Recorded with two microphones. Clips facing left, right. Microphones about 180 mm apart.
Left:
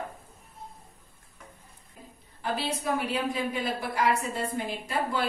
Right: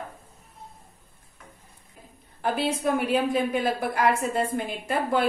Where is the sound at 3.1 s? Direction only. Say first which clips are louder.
Right 6 dB; 50° right (ahead or behind).